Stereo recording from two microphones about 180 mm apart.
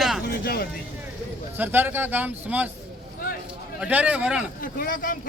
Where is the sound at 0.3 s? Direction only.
60° left (ahead or behind).